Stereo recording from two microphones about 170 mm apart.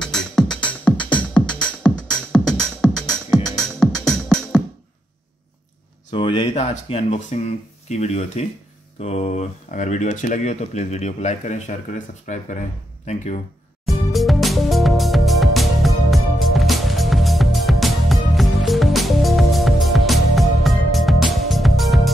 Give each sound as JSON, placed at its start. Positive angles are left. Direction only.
{"t": 0.0, "sound": "music", "side_deg": 5}
{"t": 6.1, "sound": "speech", "side_deg": 30}
{"t": 13.8, "sound": "music", "side_deg": 0}